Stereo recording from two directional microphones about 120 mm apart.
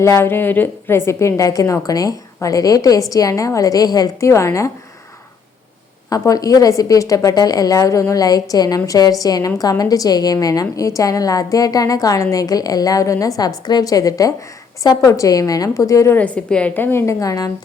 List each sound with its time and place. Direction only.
0.0 s a woman's voice: 20° left (ahead or behind)
6.1 s a woman's voice: 30° left (ahead or behind)
16.1 s a woman's voice: 10° left (ahead or behind); by 17.5 s 30° left (ahead or behind)